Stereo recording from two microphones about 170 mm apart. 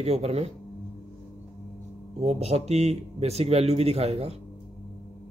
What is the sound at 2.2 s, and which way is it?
A man's voice, 40° right (ahead or behind).